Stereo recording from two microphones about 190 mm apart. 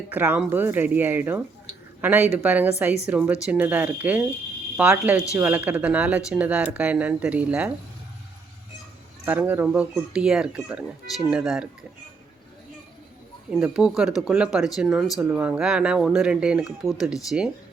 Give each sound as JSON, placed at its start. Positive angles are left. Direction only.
{"t": 0.1, "sound": "speech", "side_deg": -10}
{"t": 9.2, "sound": "speech", "side_deg": -10}
{"t": 13.5, "sound": "speech", "side_deg": -5}